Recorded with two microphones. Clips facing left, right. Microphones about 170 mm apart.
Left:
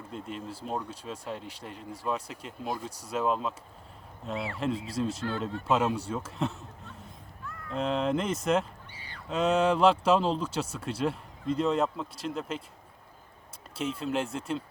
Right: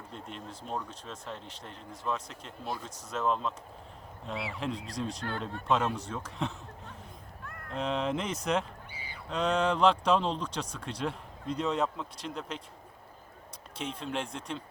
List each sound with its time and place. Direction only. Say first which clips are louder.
0.1 s speech: left 6 dB; 5° left (ahead or behind)
7.4 s a sound: left 4 dB; 55° right (ahead or behind)
7.7 s speech: left 3 dB; centre (ahead or behind)
8.9 s honk: right 1 dB; 10° right (ahead or behind)
9.3 s speech: left 3 dB; 5° left (ahead or behind)
13.7 s speech: left 5 dB; 5° left (ahead or behind)